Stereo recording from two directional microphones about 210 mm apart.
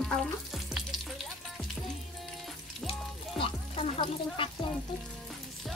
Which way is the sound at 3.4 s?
25° left (ahead or behind).